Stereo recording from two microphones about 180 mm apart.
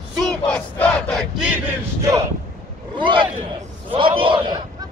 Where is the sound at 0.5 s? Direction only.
5° left (ahead or behind).